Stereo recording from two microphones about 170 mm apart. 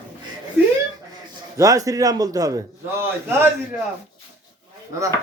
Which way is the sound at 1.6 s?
20° right (ahead or behind).